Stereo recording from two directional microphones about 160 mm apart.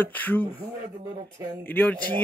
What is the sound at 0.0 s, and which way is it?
Speech, 10° left (ahead or behind).